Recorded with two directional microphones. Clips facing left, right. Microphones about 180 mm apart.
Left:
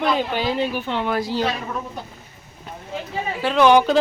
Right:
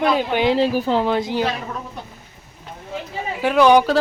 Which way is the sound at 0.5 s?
35° right (ahead or behind).